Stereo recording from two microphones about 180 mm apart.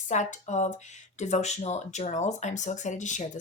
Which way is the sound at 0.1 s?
40° left (ahead or behind).